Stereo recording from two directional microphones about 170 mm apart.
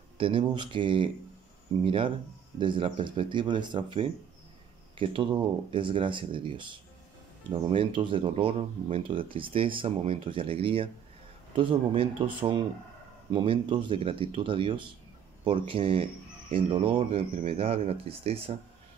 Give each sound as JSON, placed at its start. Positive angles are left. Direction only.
{"t": 0.2, "sound": "speech", "side_deg": -30}